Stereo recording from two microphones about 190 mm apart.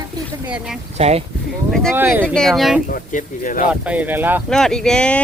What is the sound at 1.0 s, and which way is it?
Speech, 35° right (ahead or behind).